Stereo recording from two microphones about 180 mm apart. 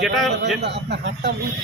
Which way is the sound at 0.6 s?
70° right (ahead or behind).